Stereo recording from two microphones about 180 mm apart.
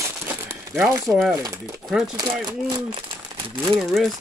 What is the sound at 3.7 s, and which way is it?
Speech, centre (ahead or behind).